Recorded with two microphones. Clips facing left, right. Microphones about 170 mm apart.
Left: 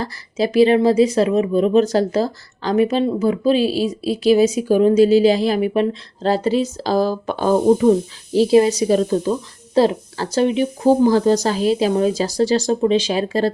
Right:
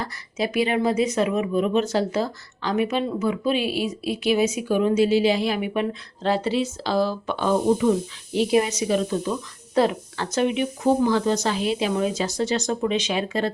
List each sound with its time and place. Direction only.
0.0 s speech: 35° left (ahead or behind)